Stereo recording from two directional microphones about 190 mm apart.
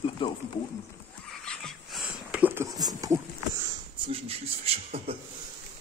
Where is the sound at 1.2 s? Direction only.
5° left (ahead or behind).